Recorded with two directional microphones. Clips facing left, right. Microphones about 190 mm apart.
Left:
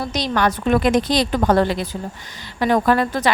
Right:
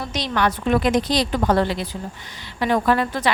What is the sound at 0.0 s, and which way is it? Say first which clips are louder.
Speech: left 2 dB; 40° left (ahead or behind).